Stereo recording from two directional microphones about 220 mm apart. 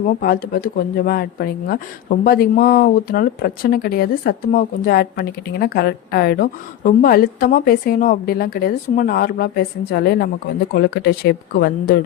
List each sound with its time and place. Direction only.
0.0 s speech: 40° left (ahead or behind)